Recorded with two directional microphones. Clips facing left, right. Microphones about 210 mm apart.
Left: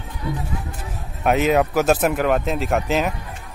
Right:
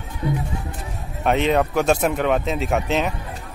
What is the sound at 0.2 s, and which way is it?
Music, 20° right (ahead or behind).